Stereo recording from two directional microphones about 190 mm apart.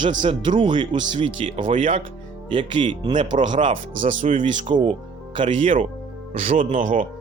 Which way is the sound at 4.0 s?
40° right (ahead or behind).